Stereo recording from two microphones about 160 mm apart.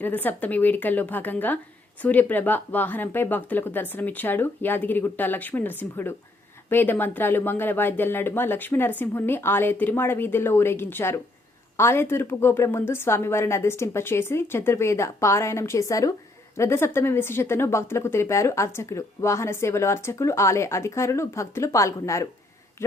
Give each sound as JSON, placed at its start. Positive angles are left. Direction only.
{"t": 0.0, "sound": "speech", "side_deg": 10}